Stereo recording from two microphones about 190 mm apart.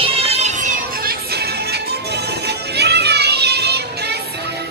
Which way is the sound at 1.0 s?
55° right (ahead or behind).